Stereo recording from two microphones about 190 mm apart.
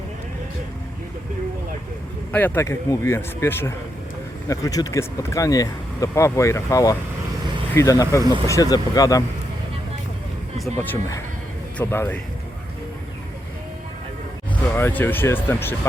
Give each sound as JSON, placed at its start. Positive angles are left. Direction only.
{"t": 2.3, "sound": "speech", "side_deg": 10}
{"t": 10.8, "sound": "speech", "side_deg": 15}
{"t": 14.8, "sound": "speech", "side_deg": 10}